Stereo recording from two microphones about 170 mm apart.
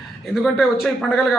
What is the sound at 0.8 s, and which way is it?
Speech, centre (ahead or behind).